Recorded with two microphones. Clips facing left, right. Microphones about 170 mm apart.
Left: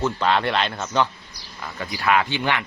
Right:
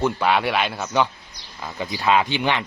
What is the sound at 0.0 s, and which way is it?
A man's voice, 10° right (ahead or behind).